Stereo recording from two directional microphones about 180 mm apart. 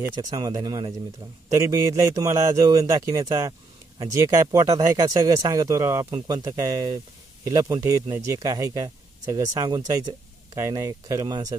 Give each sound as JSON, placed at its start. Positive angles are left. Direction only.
{"t": 0.2, "sound": "speech", "side_deg": -20}